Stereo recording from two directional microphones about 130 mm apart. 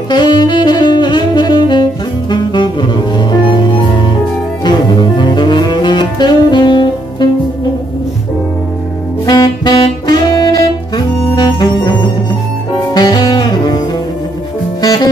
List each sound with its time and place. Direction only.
0.1 s saxophone: 35° left (ahead or behind)
9.2 s saxophone: 30° left (ahead or behind)
12.9 s music: 30° left (ahead or behind)